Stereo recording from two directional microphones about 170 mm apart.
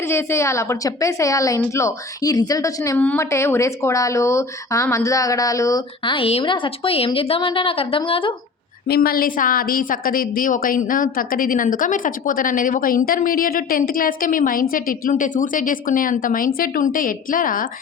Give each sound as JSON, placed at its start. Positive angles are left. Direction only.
{"t": 0.1, "sound": "a woman's voice", "side_deg": 15}
{"t": 8.9, "sound": "a woman's voice", "side_deg": 60}